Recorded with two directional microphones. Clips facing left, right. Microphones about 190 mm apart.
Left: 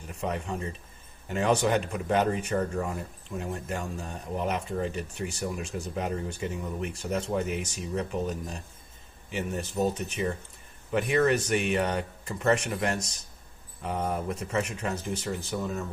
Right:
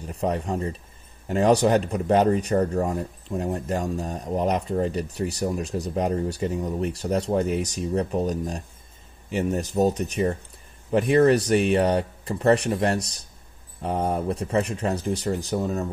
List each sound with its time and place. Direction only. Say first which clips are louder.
0.0 s speech: right 6 dB; 35° right (ahead or behind)